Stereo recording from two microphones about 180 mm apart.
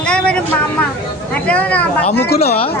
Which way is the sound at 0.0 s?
5° left (ahead or behind).